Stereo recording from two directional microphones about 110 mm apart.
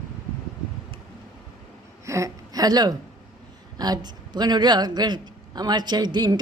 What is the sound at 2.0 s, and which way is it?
A woman's voice, 30° right (ahead or behind).